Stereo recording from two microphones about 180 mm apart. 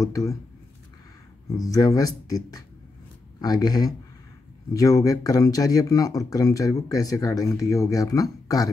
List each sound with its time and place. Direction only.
0.0 s speech: 20° left (ahead or behind)
1.6 s speech: 20° left (ahead or behind)